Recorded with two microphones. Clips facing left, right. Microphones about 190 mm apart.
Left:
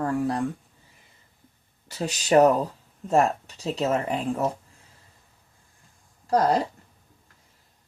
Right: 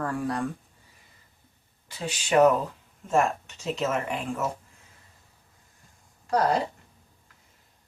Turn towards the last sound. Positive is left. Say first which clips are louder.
# left 2 dB
turn(degrees=35)  # may be behind; listen again after turning